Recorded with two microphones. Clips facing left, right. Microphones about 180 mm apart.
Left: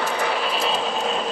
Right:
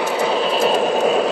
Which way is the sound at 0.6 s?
50° right (ahead or behind).